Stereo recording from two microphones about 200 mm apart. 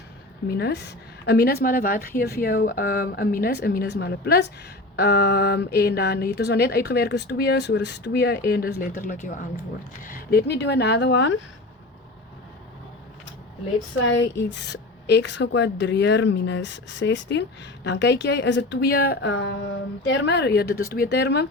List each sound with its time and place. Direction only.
0.4 s a woman's voice: 55° left (ahead or behind)
14.0 s a woman's voice: 65° left (ahead or behind)